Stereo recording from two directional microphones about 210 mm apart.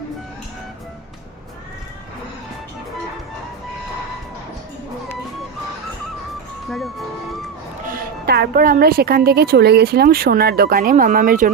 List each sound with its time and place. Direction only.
7.9 s a woman's voice: 45° right (ahead or behind)